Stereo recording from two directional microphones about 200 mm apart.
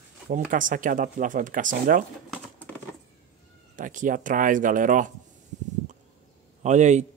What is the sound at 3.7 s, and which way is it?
Speech, 40° right (ahead or behind).